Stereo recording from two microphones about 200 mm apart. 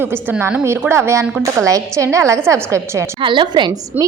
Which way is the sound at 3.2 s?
25° right (ahead or behind).